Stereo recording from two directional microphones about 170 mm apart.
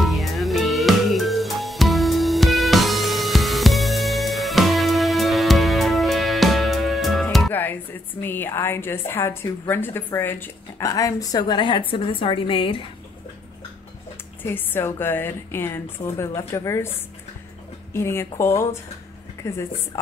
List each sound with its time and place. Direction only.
0.0 s music: centre (ahead or behind)
7.5 s a woman's voice: 10° left (ahead or behind); by 12.8 s 30° left (ahead or behind)
14.4 s a woman's voice: 10° left (ahead or behind)
17.9 s a woman's voice: 15° left (ahead or behind)